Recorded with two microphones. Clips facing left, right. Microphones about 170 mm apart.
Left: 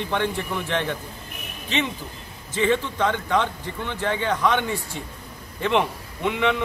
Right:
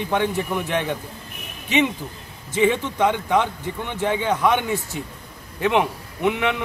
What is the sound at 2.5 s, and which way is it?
A man's voice, 10° right (ahead or behind).